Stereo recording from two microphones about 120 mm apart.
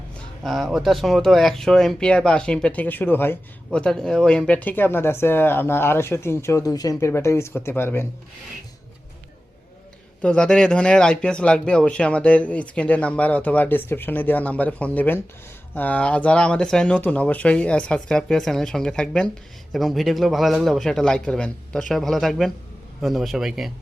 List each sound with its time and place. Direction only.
0.4 s speech: centre (ahead or behind); by 8.0 s 20° left (ahead or behind)
10.2 s a man's voice: 10° left (ahead or behind)